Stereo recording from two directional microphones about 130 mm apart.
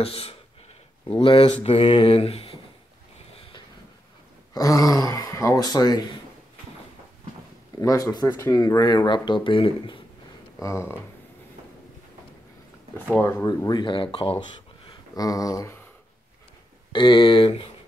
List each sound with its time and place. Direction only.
0.0 s speech: 50° left (ahead or behind)
4.6 s speech: 25° left (ahead or behind)
7.8 s speech: 25° left (ahead or behind); by 9.9 s 40° left (ahead or behind)
10.6 s speech: 20° left (ahead or behind)
13.2 s speech: 15° left (ahead or behind)
13.5 s speech: 30° left (ahead or behind)
15.1 s speech: 25° left (ahead or behind)
16.9 s speech: 35° left (ahead or behind)